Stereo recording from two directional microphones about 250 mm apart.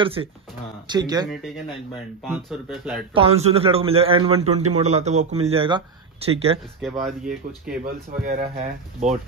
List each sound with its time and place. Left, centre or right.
0.0 s a man's voice: right
2.2 s speech: centre
3.2 s a man's voice: right
6.9 s speech: centre
7.8 s a man's voice: right